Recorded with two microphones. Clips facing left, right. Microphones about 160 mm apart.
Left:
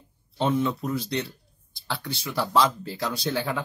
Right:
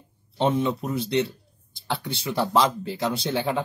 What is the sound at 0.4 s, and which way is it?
Speech, 25° right (ahead or behind).